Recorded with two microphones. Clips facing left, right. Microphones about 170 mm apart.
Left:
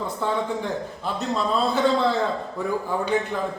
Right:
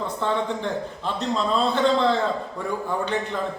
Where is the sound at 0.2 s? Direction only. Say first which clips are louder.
Even; 10° left (ahead or behind).